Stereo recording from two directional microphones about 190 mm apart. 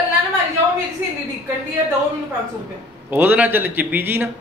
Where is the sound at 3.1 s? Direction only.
10° right (ahead or behind).